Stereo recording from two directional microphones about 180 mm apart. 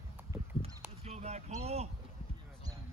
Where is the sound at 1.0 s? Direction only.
35° right (ahead or behind).